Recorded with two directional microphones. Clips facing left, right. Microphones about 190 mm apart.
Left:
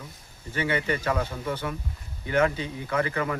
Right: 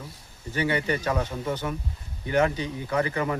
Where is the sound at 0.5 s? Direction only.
15° right (ahead or behind).